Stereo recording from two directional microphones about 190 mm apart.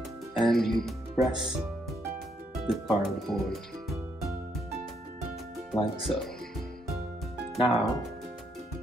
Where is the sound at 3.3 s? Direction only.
Centre (ahead or behind).